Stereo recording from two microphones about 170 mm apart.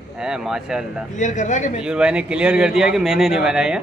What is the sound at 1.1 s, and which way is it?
Speech, 45° left (ahead or behind).